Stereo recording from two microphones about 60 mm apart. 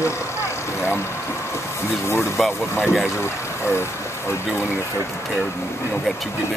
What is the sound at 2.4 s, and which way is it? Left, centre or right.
Speech, centre.